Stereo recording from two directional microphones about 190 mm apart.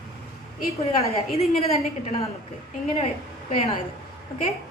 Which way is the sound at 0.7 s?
35° left (ahead or behind).